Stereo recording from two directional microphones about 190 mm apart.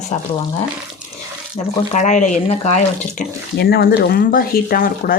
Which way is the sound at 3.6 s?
50° left (ahead or behind).